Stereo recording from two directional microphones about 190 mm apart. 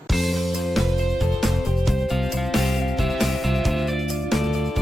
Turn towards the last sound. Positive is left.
turn(degrees=0)  # may be behind; listen again after turning